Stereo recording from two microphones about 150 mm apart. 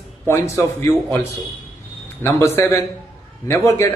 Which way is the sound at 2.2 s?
15° left (ahead or behind).